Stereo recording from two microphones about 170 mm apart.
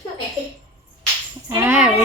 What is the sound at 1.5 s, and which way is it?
Speech, 15° right (ahead or behind).